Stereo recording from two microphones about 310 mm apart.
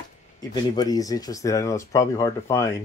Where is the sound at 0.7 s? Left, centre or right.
Centre.